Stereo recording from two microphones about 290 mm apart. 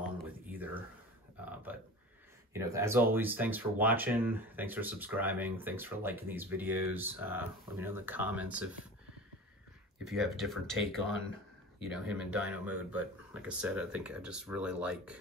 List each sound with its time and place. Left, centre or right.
0.5 s a sound: centre
2.5 s speech: centre
10.0 s speech: centre